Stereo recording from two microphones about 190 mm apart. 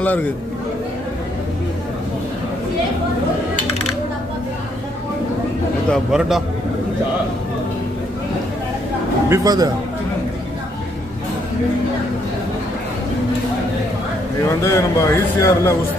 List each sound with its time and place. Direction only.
0.0 s a man's voice: 10° left (ahead or behind)
5.9 s a man's voice: centre (ahead or behind)
9.3 s speech: 20° right (ahead or behind)
14.5 s a man's voice: 15° left (ahead or behind)